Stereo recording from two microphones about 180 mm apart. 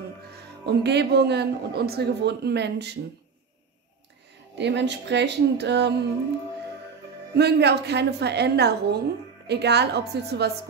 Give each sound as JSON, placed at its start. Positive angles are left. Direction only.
{"t": 0.7, "sound": "a man's voice", "side_deg": -65}
{"t": 4.6, "sound": "a man's voice", "side_deg": -75}
{"t": 7.3, "sound": "a man's voice", "side_deg": -70}